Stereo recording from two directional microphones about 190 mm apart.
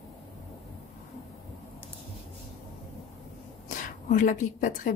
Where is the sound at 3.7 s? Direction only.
45° left (ahead or behind).